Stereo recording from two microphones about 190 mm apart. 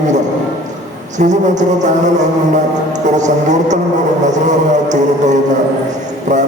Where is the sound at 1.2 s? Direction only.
40° right (ahead or behind).